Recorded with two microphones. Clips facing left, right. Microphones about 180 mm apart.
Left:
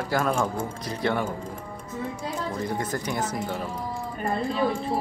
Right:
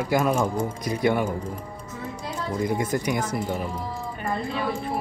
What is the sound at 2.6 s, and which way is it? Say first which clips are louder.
Speech: right 4 dB; 10° right (ahead or behind).